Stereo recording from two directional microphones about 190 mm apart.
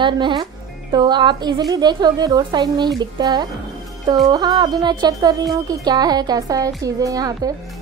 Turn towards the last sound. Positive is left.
turn(degrees=-20)  # may be behind; listen again after turning